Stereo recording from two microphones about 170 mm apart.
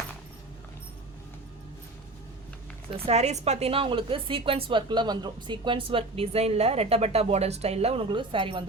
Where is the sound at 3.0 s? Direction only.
40° right (ahead or behind).